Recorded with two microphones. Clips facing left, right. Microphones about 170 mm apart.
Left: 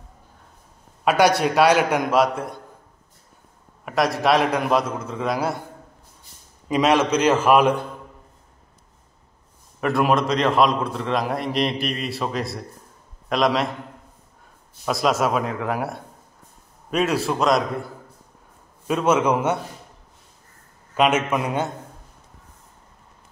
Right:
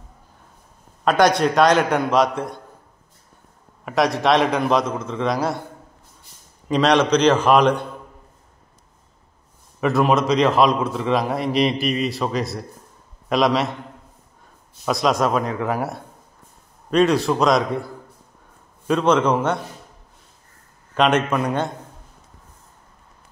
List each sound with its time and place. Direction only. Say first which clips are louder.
1.0 s a man's voice: right 1 dB; 10° left (ahead or behind)
3.8 s a man's voice: right 1 dB; centre (ahead or behind)
6.7 s a man's voice: right 2 dB; 5° left (ahead or behind)
9.8 s a man's voice: right 2 dB; centre (ahead or behind)
14.9 s a man's voice: right 1 dB; centre (ahead or behind)
18.9 s a man's voice: right 2 dB; 5° left (ahead or behind)
20.9 s a man's voice: right 1 dB; 5° left (ahead or behind)